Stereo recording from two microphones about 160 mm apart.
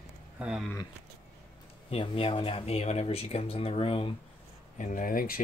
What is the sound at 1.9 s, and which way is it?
Speech, 35° left (ahead or behind).